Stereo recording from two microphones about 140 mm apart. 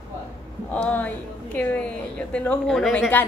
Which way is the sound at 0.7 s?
10° left (ahead or behind).